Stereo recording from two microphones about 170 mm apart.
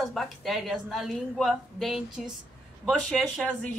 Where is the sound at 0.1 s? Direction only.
Centre (ahead or behind).